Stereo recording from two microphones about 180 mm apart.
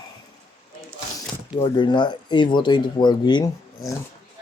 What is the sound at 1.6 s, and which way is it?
Speech, 25° left (ahead or behind).